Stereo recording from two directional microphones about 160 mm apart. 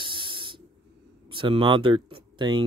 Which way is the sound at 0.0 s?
30° right (ahead or behind).